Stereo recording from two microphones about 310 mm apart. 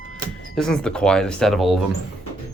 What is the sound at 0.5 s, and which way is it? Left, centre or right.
Speech, centre.